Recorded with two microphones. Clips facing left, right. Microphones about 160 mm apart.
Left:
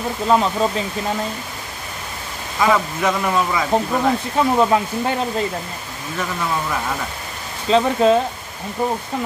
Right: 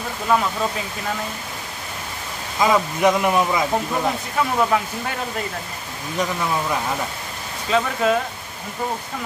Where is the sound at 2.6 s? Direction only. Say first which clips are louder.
Even; 15° right (ahead or behind).